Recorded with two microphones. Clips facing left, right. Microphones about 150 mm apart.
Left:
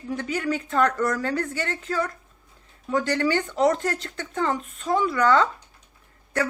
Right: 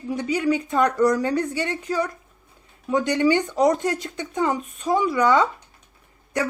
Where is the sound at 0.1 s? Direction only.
15° right (ahead or behind).